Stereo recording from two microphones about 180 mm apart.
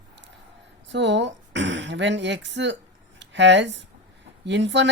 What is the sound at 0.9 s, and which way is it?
Speech, 80° right.